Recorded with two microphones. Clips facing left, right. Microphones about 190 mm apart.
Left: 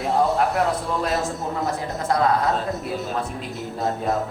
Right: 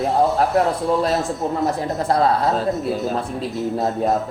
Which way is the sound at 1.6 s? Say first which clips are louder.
Right 4 dB; 35° right (ahead or behind).